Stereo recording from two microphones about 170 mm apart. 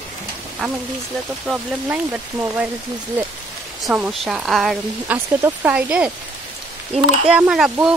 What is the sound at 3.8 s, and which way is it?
Speech, 5° right (ahead or behind).